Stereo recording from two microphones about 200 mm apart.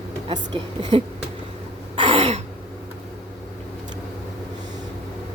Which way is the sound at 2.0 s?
30° right (ahead or behind).